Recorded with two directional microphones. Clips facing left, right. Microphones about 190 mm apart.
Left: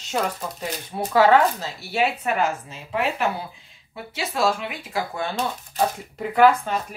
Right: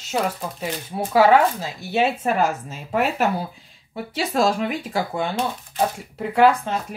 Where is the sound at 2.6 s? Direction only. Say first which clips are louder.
Right 3 dB; 45° right (ahead or behind).